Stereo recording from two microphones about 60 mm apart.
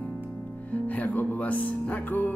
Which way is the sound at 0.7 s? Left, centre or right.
Left.